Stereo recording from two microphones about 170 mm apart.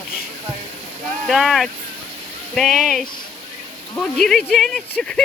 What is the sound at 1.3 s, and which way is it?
Speech, centre (ahead or behind).